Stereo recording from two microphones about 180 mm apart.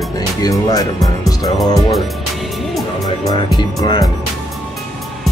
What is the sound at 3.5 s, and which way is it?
Speech, 25° left (ahead or behind).